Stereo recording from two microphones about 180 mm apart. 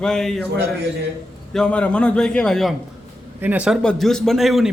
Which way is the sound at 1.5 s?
5° left (ahead or behind).